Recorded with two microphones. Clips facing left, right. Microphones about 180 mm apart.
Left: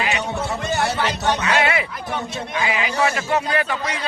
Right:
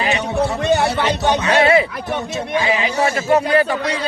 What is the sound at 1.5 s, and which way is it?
A man's voice, 35° right (ahead or behind).